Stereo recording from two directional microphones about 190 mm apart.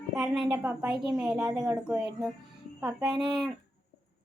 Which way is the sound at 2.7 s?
5° right (ahead or behind).